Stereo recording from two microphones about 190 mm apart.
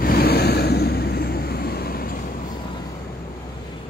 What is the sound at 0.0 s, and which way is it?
Vehicle, 55° left (ahead or behind).